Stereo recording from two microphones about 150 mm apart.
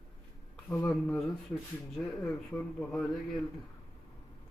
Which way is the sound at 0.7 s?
20° left (ahead or behind).